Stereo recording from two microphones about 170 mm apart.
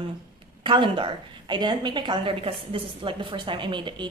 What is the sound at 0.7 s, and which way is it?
A woman's voice, 30° right (ahead or behind).